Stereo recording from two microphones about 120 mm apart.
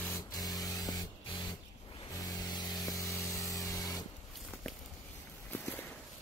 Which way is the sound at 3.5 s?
30° left (ahead or behind).